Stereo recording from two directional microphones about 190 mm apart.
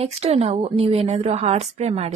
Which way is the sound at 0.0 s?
30° right (ahead or behind).